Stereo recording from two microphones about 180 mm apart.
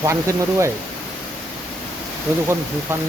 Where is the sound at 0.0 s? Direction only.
15° right (ahead or behind).